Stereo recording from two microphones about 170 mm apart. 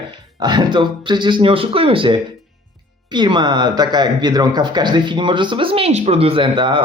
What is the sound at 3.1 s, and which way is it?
Speech, 25° right (ahead or behind).